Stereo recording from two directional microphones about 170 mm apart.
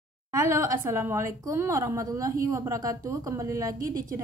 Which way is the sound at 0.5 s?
15° right (ahead or behind).